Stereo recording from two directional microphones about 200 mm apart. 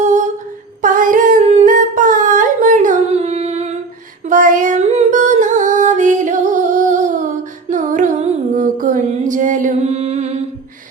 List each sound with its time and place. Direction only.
0.0 s humming: 35° right (ahead or behind)
4.3 s music: 40° right (ahead or behind)